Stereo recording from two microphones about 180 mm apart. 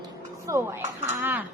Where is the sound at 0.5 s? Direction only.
20° right (ahead or behind).